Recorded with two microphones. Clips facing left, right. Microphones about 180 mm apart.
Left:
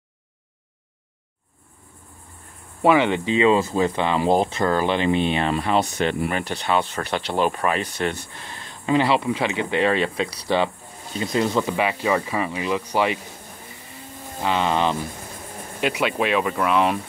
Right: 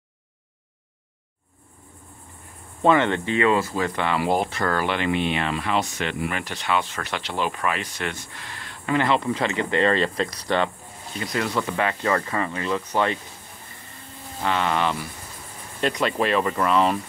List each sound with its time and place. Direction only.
2.8 s speech: 10° left (ahead or behind); by 8.5 s 35° left (ahead or behind)
8.5 s a sound: 20° left (ahead or behind)
9.0 s speech: 10° left (ahead or behind)
11.1 s speech: 25° left (ahead or behind)
14.4 s speech: 20° left (ahead or behind)
15.8 s speech: 5° left (ahead or behind)